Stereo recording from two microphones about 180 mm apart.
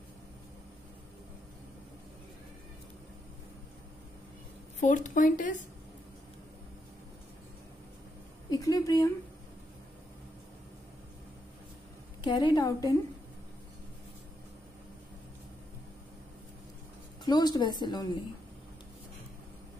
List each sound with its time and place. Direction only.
4.7 s speech: 45° left (ahead or behind)
8.5 s speech: 20° left (ahead or behind)
12.3 s a woman's voice: 25° left (ahead or behind)
17.2 s a woman's voice: 25° left (ahead or behind)